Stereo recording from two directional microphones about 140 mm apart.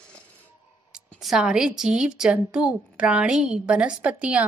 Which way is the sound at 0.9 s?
5° right (ahead or behind).